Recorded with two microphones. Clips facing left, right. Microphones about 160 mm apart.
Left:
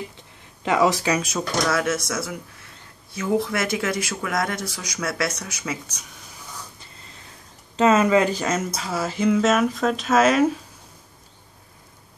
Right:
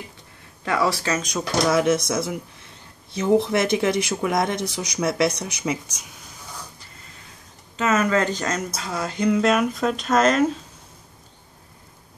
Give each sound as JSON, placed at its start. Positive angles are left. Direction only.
{"t": 0.7, "sound": "speech", "side_deg": 15}
{"t": 1.7, "sound": "speech", "side_deg": -20}
{"t": 7.7, "sound": "speech", "side_deg": 30}
{"t": 8.1, "sound": "speech", "side_deg": 10}